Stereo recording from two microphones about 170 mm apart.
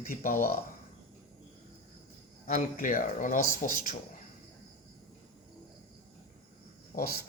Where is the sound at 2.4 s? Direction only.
50° left (ahead or behind).